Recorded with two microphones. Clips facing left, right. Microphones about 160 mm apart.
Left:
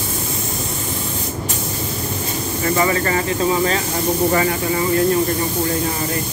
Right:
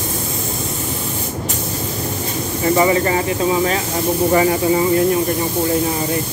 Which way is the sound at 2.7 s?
20° right (ahead or behind).